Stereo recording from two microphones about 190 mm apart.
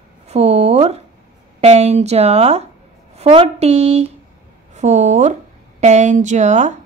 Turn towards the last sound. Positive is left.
turn(degrees=-40)  # may be behind; listen again after turning